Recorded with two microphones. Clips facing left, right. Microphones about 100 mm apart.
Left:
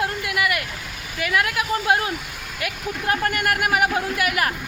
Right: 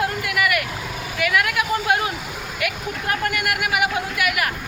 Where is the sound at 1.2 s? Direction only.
30° left (ahead or behind).